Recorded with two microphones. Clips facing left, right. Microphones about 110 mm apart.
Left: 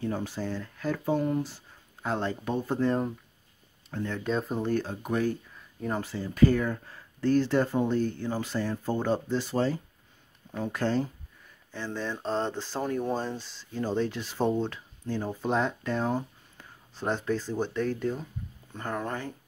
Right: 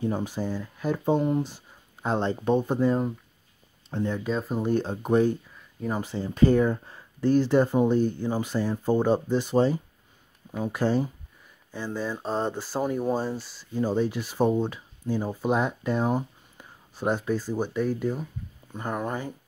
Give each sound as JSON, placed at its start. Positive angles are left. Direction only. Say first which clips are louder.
{"t": 0.0, "sound": "speech", "louder": "right 3 dB", "side_deg": -15}
{"t": 3.9, "sound": "speech", "louder": "right 5 dB", "side_deg": -20}
{"t": 4.2, "sound": "speech", "louder": "right 1 dB", "side_deg": 0}
{"t": 4.6, "sound": "speech", "louder": "right 4 dB", "side_deg": -25}